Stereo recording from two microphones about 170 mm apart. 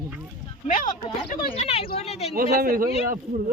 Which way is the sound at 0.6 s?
50° left (ahead or behind).